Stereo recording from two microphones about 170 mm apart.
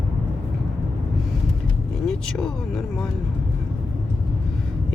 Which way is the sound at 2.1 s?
5° left (ahead or behind).